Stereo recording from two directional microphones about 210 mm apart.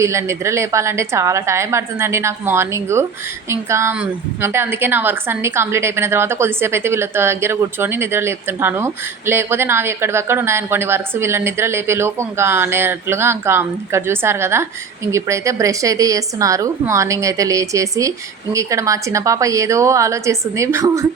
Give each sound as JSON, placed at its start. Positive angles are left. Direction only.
{"t": 0.0, "sound": "a woman's voice", "side_deg": -15}